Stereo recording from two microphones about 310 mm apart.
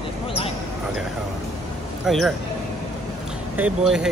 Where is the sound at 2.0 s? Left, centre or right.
Centre.